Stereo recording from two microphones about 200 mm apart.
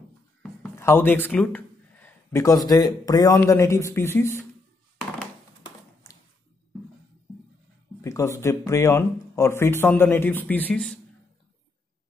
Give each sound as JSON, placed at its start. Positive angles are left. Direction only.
{"t": 0.4, "sound": "speech", "side_deg": 10}
{"t": 6.0, "sound": "a sound", "side_deg": 15}
{"t": 8.0, "sound": "speech", "side_deg": 15}